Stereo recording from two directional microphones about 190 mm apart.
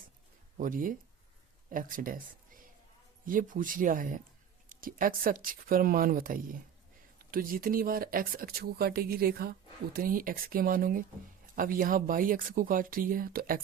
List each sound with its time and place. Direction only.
0.5 s speech: 45° right (ahead or behind)
3.2 s speech: 45° right (ahead or behind)